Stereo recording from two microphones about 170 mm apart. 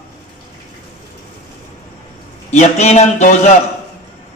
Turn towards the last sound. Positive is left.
turn(degrees=45)  # may be behind; listen again after turning